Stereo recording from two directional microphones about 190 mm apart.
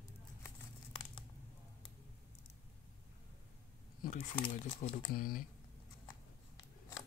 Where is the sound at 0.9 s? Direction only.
25° left (ahead or behind).